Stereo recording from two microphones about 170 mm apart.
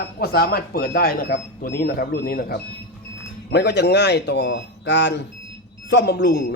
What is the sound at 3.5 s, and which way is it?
A man's voice, 85° left.